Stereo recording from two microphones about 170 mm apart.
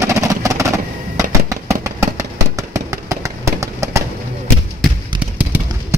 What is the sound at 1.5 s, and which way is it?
Vehicle, 20° right (ahead or behind).